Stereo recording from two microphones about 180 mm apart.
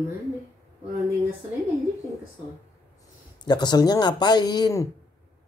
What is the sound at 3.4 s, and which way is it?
Speech, 25° left (ahead or behind).